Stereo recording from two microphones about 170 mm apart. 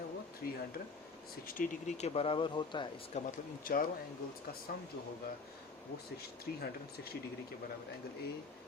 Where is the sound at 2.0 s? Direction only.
35° left (ahead or behind).